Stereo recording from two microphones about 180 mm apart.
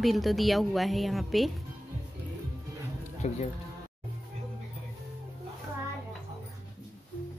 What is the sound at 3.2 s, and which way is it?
Speech, 40° left (ahead or behind).